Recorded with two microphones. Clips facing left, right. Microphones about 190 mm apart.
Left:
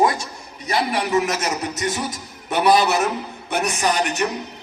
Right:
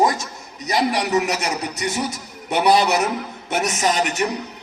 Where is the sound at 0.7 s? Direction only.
15° right (ahead or behind).